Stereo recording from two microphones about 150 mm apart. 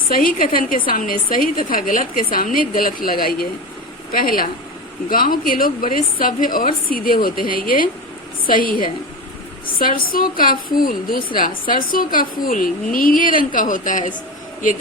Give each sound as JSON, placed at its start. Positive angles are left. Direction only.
{"t": 0.1, "sound": "a woman's voice", "side_deg": 70}